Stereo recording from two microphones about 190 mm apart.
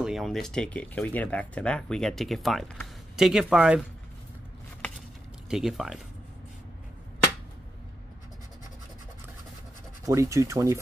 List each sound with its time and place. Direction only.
0.0 s speech: centre (ahead or behind)
5.5 s speech: centre (ahead or behind)
10.0 s speech: 15° right (ahead or behind)